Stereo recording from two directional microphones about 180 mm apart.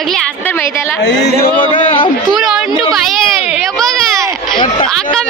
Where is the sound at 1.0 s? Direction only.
85° left.